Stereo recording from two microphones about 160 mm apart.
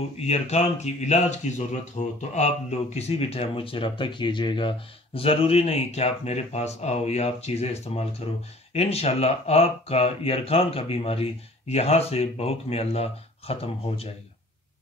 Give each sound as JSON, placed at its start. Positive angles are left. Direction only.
{"t": 0.2, "sound": "speech", "side_deg": 40}